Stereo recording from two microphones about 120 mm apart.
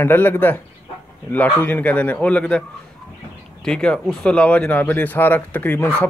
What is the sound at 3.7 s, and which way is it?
Speech, 5° left (ahead or behind).